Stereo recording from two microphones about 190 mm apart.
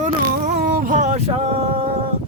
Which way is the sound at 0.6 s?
45° right (ahead or behind).